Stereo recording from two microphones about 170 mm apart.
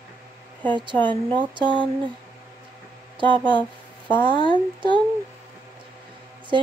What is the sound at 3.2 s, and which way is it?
Speech, 30° right (ahead or behind).